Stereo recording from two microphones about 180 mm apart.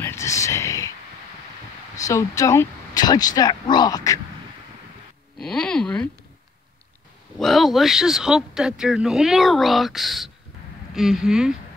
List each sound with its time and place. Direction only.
0.0 s a sound: 15° left (ahead or behind)
2.0 s speech: 20° left (ahead or behind)
5.4 s speech: 5° left (ahead or behind)
7.3 s speech: centre (ahead or behind)